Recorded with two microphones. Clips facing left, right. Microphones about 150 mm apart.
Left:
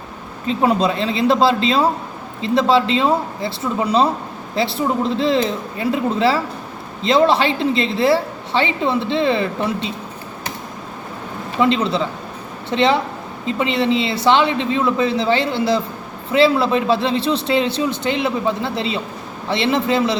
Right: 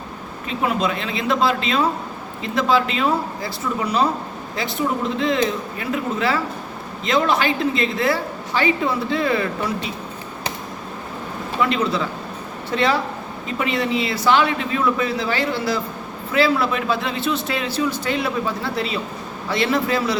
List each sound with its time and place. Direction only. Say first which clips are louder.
0.4 s a woman's voice: left 5 dB; 30° left (ahead or behind)
11.6 s a woman's voice: left 4 dB; 25° left (ahead or behind)